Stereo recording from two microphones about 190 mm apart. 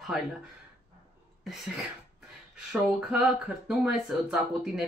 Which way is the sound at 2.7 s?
5° right (ahead or behind).